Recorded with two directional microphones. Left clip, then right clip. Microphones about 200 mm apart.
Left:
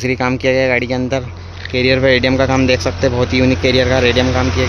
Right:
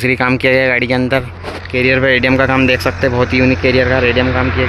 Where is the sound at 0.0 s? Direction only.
Centre (ahead or behind).